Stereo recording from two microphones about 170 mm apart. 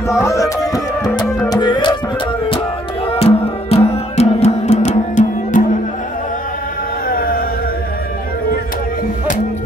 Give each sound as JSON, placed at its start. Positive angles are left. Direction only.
{"t": 0.1, "sound": "music", "side_deg": 15}
{"t": 3.1, "sound": "music", "side_deg": 35}
{"t": 7.1, "sound": "music", "side_deg": 60}